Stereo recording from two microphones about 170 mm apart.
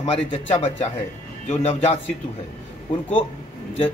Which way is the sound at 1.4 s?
40° left (ahead or behind).